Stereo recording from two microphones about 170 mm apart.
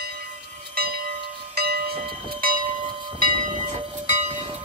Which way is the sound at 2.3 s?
55° right (ahead or behind).